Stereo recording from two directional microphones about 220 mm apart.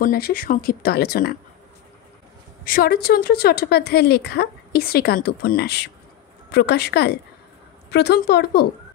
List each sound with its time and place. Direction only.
0.0 s a woman's voice: 45° left (ahead or behind)
2.6 s a woman's voice: 40° left (ahead or behind)